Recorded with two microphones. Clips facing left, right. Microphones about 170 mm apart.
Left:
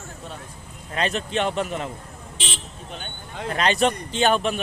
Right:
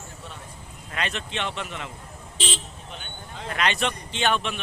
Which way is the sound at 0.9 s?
35° left (ahead or behind).